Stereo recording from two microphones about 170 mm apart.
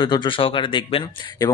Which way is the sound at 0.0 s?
25° left (ahead or behind).